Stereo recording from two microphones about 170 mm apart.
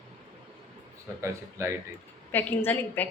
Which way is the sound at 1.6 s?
15° right (ahead or behind).